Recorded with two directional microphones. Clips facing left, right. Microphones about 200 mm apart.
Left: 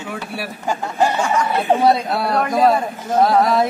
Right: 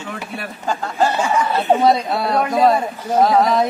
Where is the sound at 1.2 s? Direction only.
5° right (ahead or behind).